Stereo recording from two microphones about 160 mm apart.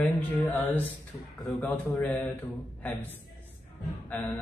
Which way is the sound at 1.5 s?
Centre (ahead or behind).